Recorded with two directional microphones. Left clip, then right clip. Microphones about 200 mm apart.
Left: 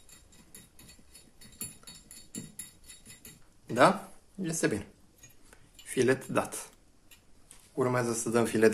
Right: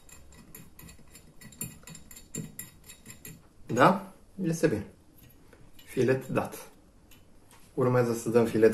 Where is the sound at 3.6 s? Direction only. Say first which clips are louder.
Right 1 dB; 20° left (ahead or behind).